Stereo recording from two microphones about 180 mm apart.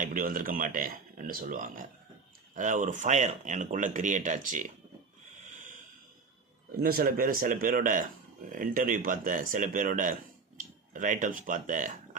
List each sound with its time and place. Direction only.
0.0 s speech: 50° right (ahead or behind)
6.7 s speech: 55° right (ahead or behind)